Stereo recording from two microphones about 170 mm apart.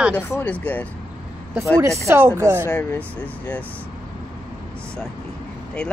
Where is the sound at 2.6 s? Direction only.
10° left (ahead or behind).